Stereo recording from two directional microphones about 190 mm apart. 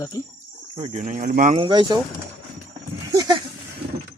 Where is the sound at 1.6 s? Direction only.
25° right (ahead or behind).